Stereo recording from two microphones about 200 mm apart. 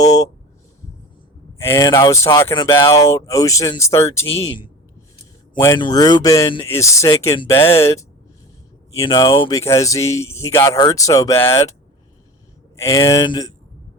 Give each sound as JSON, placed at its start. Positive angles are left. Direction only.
{"t": 0.0, "sound": "speech", "side_deg": 15}
{"t": 1.5, "sound": "speech", "side_deg": 15}
{"t": 4.3, "sound": "speech", "side_deg": 25}
{"t": 12.7, "sound": "speech", "side_deg": 15}